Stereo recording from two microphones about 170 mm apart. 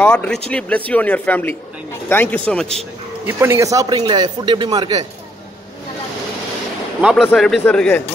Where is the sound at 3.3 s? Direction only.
15° right (ahead or behind).